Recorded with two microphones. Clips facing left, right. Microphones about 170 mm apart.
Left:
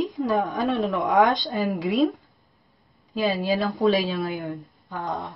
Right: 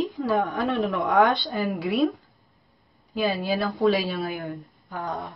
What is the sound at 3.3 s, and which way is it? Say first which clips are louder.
Speech: left 2 dB; 15° left (ahead or behind).